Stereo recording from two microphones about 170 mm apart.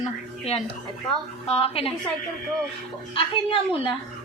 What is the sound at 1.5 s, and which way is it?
Speech, 35° left (ahead or behind).